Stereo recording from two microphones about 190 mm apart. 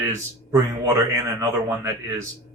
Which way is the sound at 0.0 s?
15° right (ahead or behind).